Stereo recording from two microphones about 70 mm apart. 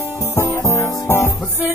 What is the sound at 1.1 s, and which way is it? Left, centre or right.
Music, left.